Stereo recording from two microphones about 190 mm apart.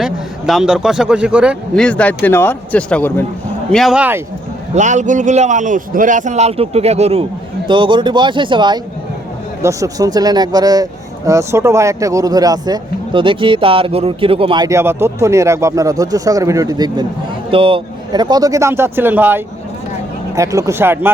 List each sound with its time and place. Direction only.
0.0 s a man's voice: centre (ahead or behind)
1.8 s speech: 5° left (ahead or behind)
4.7 s a man's voice: 40° right (ahead or behind); by 21.1 s 10° right (ahead or behind)